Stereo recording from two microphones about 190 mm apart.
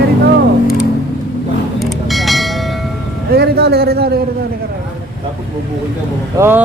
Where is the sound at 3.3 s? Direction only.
55° right (ahead or behind).